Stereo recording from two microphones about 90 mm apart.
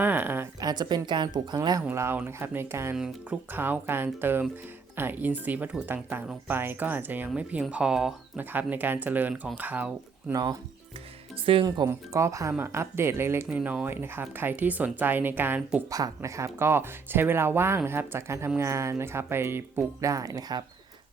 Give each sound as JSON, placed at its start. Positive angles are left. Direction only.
{"t": 0.0, "sound": "a sound", "side_deg": -20}
{"t": 0.6, "sound": "speech", "side_deg": -50}
{"t": 1.9, "sound": "speech", "side_deg": -25}
{"t": 7.7, "sound": "speech", "side_deg": -10}
{"t": 8.4, "sound": "speech", "side_deg": -20}
{"t": 10.3, "sound": "speech", "side_deg": -45}
{"t": 11.5, "sound": "speech", "side_deg": -90}
{"t": 11.9, "sound": "speech", "side_deg": -35}
{"t": 13.6, "sound": "speech", "side_deg": -10}
{"t": 13.8, "sound": "speech", "side_deg": -25}
{"t": 15.9, "sound": "speech", "side_deg": -45}